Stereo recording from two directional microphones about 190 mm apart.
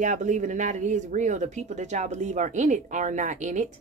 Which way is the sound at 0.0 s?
40° right (ahead or behind).